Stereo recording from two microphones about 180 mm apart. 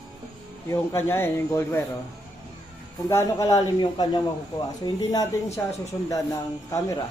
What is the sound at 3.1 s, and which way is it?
Speech, 15° left (ahead or behind).